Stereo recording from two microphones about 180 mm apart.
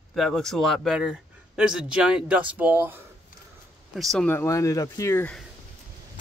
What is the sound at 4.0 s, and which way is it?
Speech, centre (ahead or behind).